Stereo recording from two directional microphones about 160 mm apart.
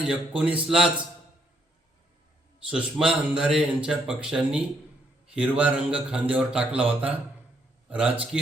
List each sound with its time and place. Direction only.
0.1 s a man's voice: 5° right (ahead or behind)
2.6 s a man's voice: 5° right (ahead or behind)